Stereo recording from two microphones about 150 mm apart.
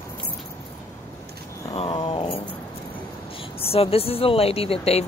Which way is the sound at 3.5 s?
40° left (ahead or behind).